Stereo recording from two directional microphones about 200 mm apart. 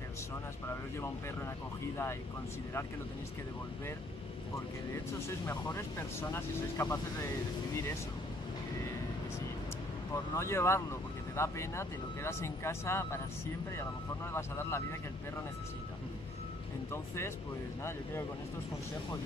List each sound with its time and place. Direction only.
5.5 s speech: 15° left (ahead or behind)
10.3 s speech: 15° left (ahead or behind)
14.3 s speech: 10° left (ahead or behind)
16.9 s speech: 10° left (ahead or behind)